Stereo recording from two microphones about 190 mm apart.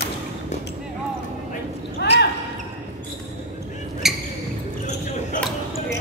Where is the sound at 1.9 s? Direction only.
60° left (ahead or behind).